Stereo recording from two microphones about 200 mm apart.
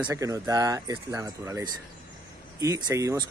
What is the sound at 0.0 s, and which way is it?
Speech, 15° right (ahead or behind).